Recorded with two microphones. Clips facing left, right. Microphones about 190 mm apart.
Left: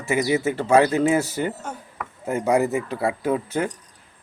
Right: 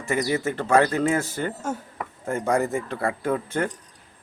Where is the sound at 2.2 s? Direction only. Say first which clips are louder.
Left 3 dB; 10° left (ahead or behind).